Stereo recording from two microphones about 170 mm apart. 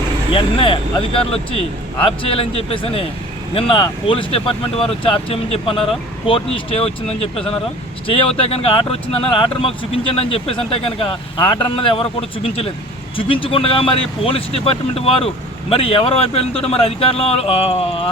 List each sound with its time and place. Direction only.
0.3 s speech: 30° left (ahead or behind)